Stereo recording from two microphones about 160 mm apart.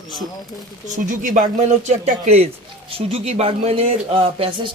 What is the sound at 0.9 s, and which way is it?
Speech, 55° right (ahead or behind).